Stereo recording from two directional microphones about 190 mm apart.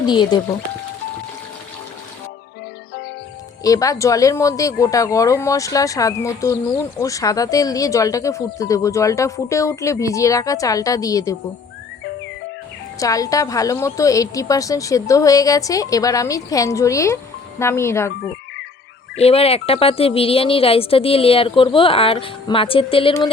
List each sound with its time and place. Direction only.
0.0 s a woman's voice: 25° left (ahead or behind)
3.6 s speech: 15° left (ahead or behind)
13.0 s speech: 15° left (ahead or behind)
19.1 s a woman's voice: 30° left (ahead or behind)